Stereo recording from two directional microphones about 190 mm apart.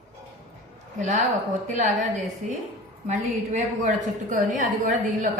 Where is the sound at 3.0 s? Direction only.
40° right (ahead or behind).